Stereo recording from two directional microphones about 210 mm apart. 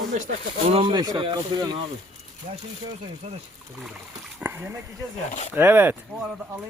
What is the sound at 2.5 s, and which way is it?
Speech, 40° right (ahead or behind).